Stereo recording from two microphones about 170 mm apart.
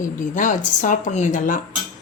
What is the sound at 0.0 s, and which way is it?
Speech, 50° left (ahead or behind).